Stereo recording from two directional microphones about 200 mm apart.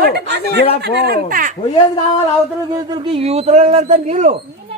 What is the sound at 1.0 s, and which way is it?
Speech, 45° right (ahead or behind).